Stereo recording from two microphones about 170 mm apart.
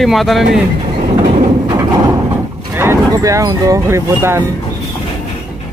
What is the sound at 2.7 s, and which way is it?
Speech, 15° right (ahead or behind).